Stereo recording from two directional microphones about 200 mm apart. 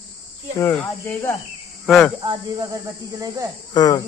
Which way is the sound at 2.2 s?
15° right (ahead or behind).